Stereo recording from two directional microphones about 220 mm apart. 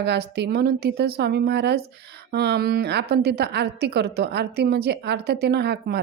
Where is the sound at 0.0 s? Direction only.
50° right (ahead or behind).